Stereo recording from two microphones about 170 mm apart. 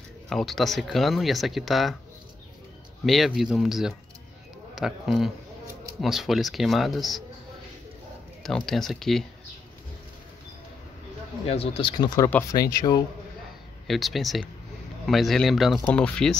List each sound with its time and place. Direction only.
0.3 s speech: centre (ahead or behind)
3.1 s speech: centre (ahead or behind)
8.4 s speech: centre (ahead or behind)
11.4 s speech: 35° left (ahead or behind)
12.5 s speech: 20° left (ahead or behind)
13.8 s speech: centre (ahead or behind)